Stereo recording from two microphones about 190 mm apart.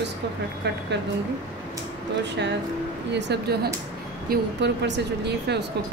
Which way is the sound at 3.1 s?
65° right (ahead or behind).